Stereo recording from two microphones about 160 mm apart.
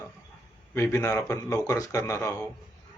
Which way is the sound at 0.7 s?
15° left (ahead or behind).